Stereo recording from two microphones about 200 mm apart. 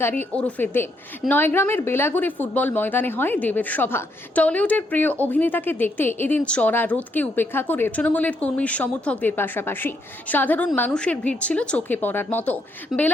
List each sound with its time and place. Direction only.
0.0 s speech: 10° left (ahead or behind)